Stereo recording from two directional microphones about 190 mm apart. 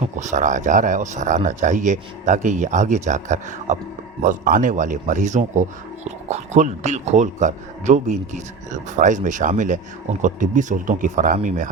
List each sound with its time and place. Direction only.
0.2 s speech: 40° right (ahead or behind)